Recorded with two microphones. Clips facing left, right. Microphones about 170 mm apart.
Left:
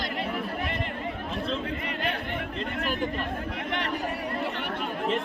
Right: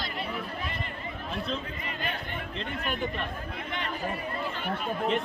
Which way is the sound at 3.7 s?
70° left (ahead or behind).